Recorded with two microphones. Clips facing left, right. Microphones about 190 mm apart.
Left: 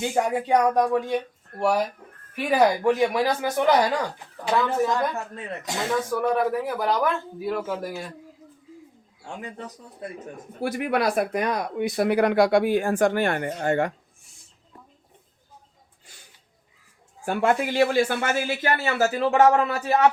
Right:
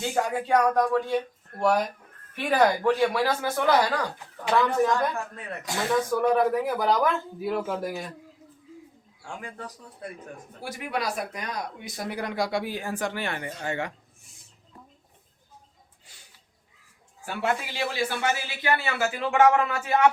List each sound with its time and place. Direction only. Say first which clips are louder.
0.0 s speech: left 3 dB; 15° left (ahead or behind)
5.1 s speech: left 2 dB; 25° left (ahead or behind)
5.9 s speech: right 1 dB; centre (ahead or behind)
9.2 s speech: left 2 dB; 20° left (ahead or behind)
10.6 s speech: left 7 dB; 60° left (ahead or behind)
17.2 s a man's voice: left 6 dB; 50° left (ahead or behind); by 20.1 s 35° left (ahead or behind)